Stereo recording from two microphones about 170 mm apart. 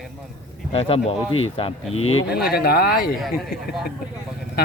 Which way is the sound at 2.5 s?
65° left (ahead or behind).